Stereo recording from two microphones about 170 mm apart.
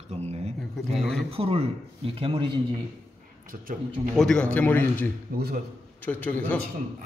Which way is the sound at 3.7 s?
50° right (ahead or behind).